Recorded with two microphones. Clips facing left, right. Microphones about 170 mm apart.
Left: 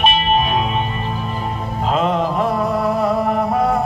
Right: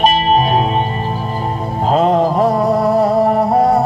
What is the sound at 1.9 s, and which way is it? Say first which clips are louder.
Music: right 5 dB; 40° right (ahead or behind).